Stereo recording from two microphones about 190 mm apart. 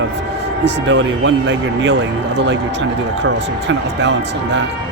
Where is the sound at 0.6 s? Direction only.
70° right (ahead or behind).